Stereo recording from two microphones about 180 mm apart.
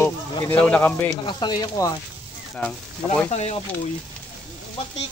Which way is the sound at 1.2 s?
25° left (ahead or behind).